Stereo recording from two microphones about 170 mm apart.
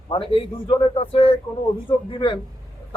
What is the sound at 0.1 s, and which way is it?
A man's voice, 30° left (ahead or behind).